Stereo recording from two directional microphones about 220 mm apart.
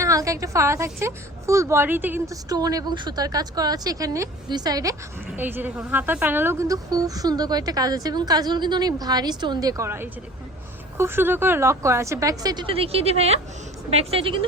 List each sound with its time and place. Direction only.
0.0 s a woman's voice: 15° right (ahead or behind)